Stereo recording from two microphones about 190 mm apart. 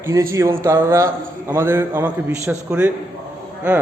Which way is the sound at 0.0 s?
15° right (ahead or behind).